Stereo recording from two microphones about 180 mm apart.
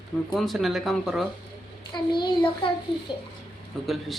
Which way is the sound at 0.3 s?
Centre (ahead or behind).